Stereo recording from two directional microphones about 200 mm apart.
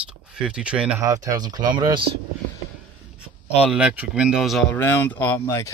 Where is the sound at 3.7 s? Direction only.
5° right (ahead or behind).